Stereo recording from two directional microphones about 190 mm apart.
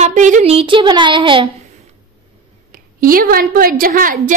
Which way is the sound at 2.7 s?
50° right (ahead or behind).